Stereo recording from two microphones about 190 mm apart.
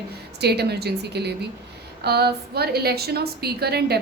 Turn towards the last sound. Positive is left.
turn(degrees=-55)  # may be behind; listen again after turning